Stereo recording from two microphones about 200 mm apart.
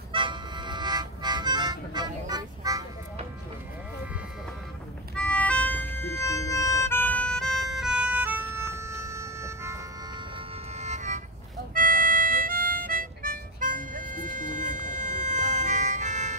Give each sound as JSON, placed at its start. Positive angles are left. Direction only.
{"t": 0.1, "sound": "music", "side_deg": -25}
{"t": 5.1, "sound": "music", "side_deg": 5}
{"t": 10.8, "sound": "music", "side_deg": -35}
{"t": 11.7, "sound": "harmonica", "side_deg": -45}